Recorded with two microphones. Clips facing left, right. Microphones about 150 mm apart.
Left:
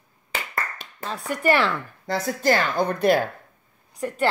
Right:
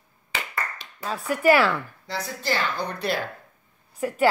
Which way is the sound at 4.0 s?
10° right (ahead or behind).